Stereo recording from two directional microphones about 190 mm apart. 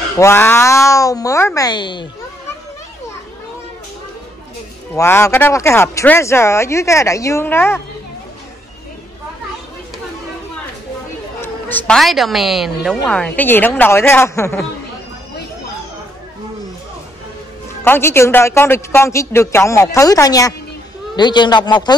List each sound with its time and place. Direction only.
0.2 s a woman's voice: 10° left (ahead or behind)
4.9 s a woman's voice: 15° left (ahead or behind)
11.4 s a woman's voice: 5° left (ahead or behind)
17.8 s a woman's voice: 10° left (ahead or behind)